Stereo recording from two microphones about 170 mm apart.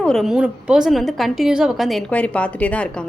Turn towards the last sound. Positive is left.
turn(degrees=5)  # may be behind; listen again after turning